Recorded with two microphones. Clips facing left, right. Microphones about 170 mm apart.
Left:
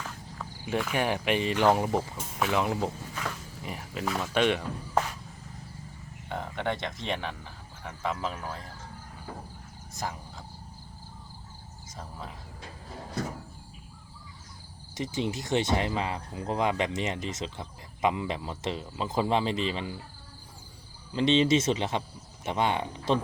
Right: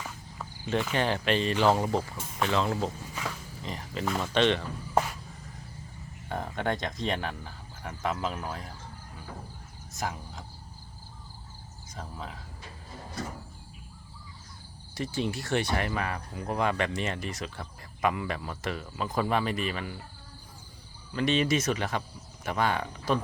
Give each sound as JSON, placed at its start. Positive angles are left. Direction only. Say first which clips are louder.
{"t": 0.0, "sound": "cricket", "louder": "left 1 dB", "side_deg": -5}
{"t": 0.6, "sound": "speech", "louder": "even", "side_deg": 5}
{"t": 6.2, "sound": "speech", "louder": "right 1 dB", "side_deg": -10}
{"t": 14.9, "sound": "speech", "louder": "even", "side_deg": 20}
{"t": 21.1, "sound": "speech", "louder": "left 3 dB", "side_deg": 25}